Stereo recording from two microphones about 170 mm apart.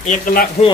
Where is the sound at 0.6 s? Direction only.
40° left (ahead or behind).